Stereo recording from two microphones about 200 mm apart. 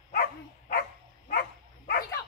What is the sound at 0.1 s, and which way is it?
Dog, 50° left (ahead or behind).